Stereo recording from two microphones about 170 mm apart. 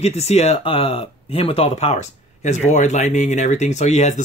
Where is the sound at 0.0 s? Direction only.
40° left (ahead or behind).